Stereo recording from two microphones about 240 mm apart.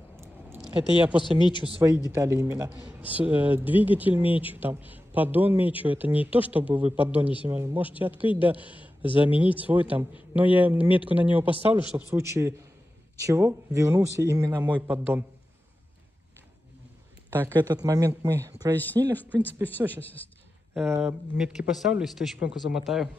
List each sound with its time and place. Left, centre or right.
0.2 s a sound: centre
1.4 s speech: centre
2.0 s a man's voice: centre
17.3 s speech: centre
20.9 s speech: centre